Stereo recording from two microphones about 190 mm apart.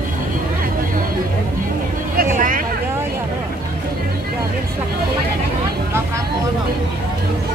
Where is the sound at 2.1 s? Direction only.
45° right (ahead or behind).